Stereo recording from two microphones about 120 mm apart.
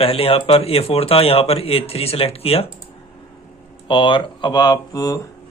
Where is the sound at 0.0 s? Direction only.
50° left (ahead or behind).